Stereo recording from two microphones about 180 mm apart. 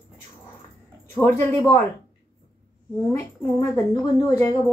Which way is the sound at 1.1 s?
15° left (ahead or behind).